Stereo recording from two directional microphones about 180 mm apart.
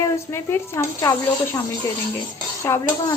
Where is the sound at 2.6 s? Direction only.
15° left (ahead or behind).